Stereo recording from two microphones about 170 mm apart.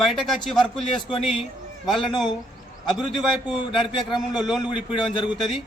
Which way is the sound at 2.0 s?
30° left (ahead or behind).